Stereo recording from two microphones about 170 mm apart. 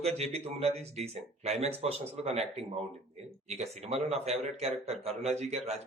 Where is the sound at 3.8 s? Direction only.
40° right (ahead or behind).